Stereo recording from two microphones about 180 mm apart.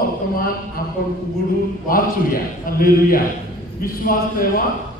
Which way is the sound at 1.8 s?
50° left (ahead or behind).